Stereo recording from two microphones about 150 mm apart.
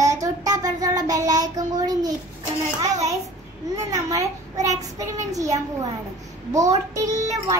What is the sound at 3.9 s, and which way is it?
A child's voice, 20° right (ahead or behind).